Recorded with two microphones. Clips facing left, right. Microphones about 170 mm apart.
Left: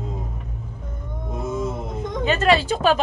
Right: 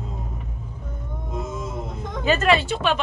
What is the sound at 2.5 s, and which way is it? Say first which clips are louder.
Speech: left 5 dB; 35° left (ahead or behind).